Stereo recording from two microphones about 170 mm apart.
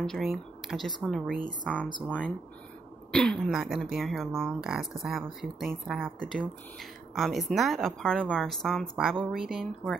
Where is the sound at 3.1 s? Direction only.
5° left (ahead or behind).